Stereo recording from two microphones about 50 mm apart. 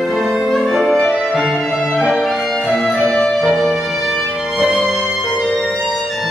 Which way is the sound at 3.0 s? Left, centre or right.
Centre.